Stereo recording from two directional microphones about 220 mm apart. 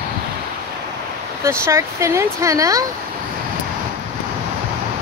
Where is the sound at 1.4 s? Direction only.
10° right (ahead or behind).